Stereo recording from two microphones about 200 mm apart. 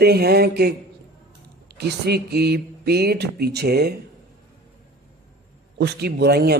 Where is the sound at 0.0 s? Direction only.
50° right (ahead or behind).